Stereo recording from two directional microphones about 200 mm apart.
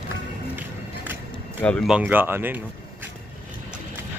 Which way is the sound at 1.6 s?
5° left (ahead or behind).